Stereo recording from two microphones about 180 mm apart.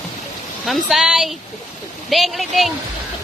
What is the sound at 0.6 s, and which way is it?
Speech, centre (ahead or behind).